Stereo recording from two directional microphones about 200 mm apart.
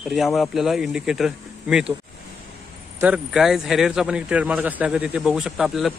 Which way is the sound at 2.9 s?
5° right (ahead or behind).